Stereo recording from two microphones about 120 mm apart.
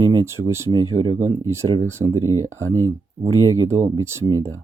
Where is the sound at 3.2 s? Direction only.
25° right (ahead or behind).